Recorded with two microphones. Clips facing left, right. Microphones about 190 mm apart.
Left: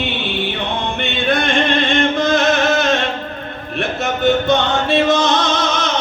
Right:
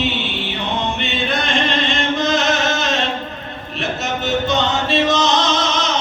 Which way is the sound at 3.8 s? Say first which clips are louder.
Left 5 dB; 55° left (ahead or behind).